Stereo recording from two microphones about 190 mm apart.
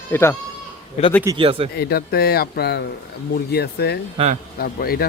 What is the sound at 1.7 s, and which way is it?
Speech, 55° left (ahead or behind).